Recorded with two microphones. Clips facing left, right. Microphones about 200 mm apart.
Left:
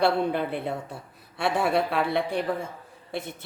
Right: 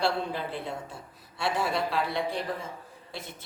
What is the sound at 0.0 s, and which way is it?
Speech, 60° left (ahead or behind).